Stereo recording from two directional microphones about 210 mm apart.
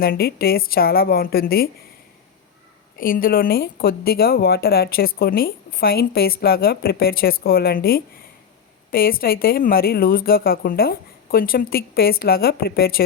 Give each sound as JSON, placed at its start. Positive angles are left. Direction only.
{"t": 0.0, "sound": "a woman's voice", "side_deg": 45}
{"t": 3.0, "sound": "a woman's voice", "side_deg": 45}